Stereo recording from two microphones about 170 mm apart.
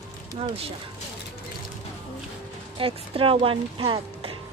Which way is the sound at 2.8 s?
30° right (ahead or behind).